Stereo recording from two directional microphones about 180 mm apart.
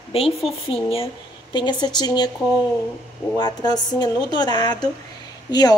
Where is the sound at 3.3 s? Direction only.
25° left (ahead or behind).